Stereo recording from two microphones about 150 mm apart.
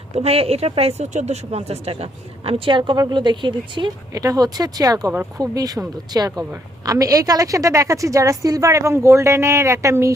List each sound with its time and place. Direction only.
0.1 s a woman's voice: 40° right (ahead or behind); by 10.1 s 20° right (ahead or behind)